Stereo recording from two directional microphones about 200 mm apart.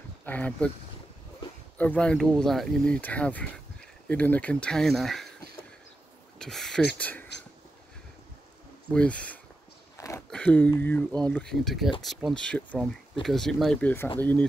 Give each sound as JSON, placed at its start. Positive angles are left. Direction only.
{"t": 0.2, "sound": "speech", "side_deg": 10}
{"t": 1.8, "sound": "speech", "side_deg": 5}
{"t": 6.3, "sound": "speech", "side_deg": 0}
{"t": 8.9, "sound": "speech", "side_deg": 5}
{"t": 9.9, "sound": "a sound", "side_deg": 15}
{"t": 10.3, "sound": "speech", "side_deg": 5}